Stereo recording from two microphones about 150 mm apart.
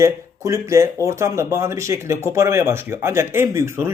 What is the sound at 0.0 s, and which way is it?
Speech, 20° right (ahead or behind).